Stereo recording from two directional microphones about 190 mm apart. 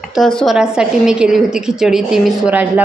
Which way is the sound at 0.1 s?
Centre (ahead or behind).